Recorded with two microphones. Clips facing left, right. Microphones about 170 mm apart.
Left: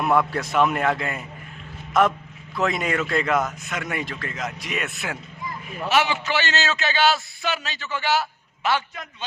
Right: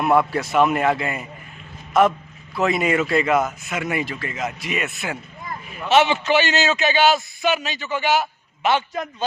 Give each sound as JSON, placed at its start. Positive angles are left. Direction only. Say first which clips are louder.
{"t": 0.0, "sound": "a man's voice", "louder": "right 3 dB", "side_deg": -5}
{"t": 5.9, "sound": "a man's voice", "louder": "right 6 dB", "side_deg": -20}